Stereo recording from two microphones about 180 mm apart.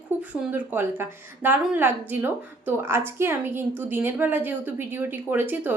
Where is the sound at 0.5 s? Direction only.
10° right (ahead or behind).